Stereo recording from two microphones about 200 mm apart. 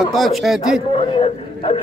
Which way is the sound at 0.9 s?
30° left (ahead or behind).